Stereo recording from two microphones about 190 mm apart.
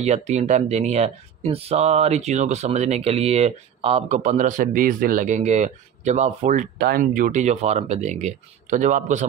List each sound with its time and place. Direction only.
0.0 s speech: 35° right (ahead or behind)